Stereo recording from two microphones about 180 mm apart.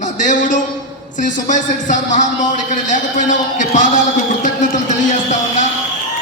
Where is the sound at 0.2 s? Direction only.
45° left (ahead or behind).